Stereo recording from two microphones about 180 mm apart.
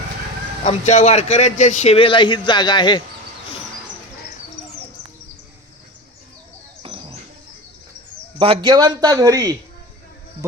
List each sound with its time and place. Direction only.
0.6 s a man's voice: 40° left (ahead or behind)
8.4 s a man's voice: 25° right (ahead or behind)